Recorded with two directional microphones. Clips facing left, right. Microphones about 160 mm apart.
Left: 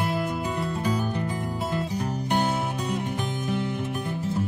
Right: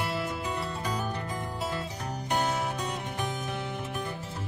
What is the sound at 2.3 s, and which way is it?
Music, 25° left (ahead or behind).